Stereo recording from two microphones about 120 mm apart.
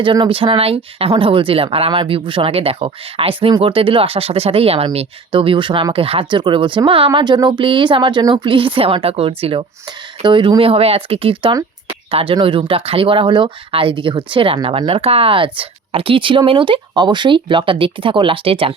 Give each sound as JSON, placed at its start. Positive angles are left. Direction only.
{"t": 0.0, "sound": "speech", "side_deg": -45}